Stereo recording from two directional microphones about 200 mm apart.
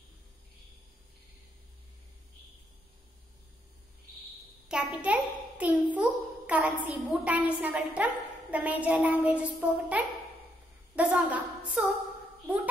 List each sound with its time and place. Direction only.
4.6 s a child's voice: 5° right (ahead or behind)